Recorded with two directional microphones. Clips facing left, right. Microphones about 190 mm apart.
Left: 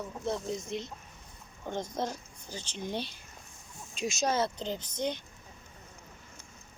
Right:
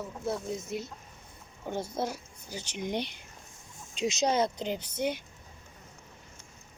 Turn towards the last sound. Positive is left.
turn(degrees=-10)  # may be behind; listen again after turning